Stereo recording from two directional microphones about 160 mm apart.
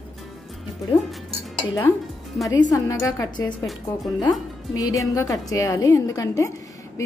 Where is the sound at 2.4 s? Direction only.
25° left (ahead or behind).